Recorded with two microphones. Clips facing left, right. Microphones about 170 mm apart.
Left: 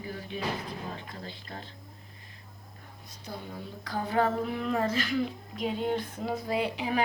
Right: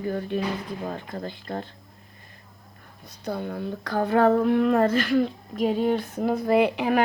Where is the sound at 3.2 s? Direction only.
65° right (ahead or behind).